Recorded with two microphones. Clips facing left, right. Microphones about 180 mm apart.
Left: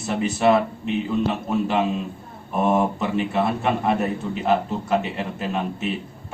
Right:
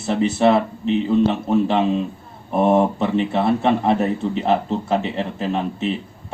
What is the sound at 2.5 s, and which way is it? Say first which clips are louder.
A man's voice: right 4 dB; 30° right (ahead or behind).